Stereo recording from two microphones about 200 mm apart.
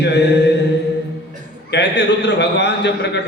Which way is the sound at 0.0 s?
60° left (ahead or behind).